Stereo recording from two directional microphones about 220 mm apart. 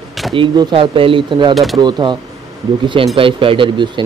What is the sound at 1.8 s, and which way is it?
A man's voice, 20° right (ahead or behind).